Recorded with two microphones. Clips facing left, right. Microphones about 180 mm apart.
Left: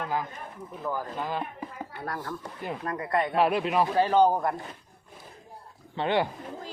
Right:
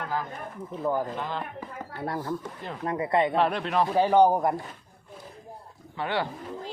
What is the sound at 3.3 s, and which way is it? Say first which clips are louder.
Speech: left 1 dB; 5° left (ahead or behind).